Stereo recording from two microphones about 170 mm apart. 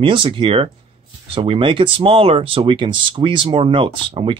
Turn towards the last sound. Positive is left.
turn(degrees=-30)  # may be behind; listen again after turning